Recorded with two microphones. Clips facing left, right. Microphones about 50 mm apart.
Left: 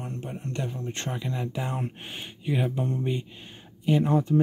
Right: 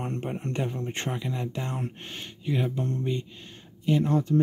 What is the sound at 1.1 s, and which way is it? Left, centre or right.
Speech, centre.